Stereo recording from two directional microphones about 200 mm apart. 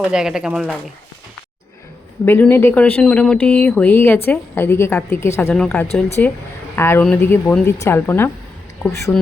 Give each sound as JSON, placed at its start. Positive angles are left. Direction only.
{"t": 0.0, "sound": "speech", "side_deg": -5}
{"t": 2.2, "sound": "speech", "side_deg": 10}